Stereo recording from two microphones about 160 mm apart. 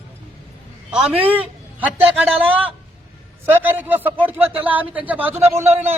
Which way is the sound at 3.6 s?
10° right (ahead or behind).